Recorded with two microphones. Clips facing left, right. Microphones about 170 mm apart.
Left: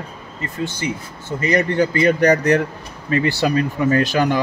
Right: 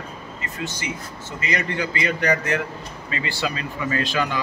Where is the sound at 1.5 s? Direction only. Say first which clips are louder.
Left 9 dB; 40° left (ahead or behind).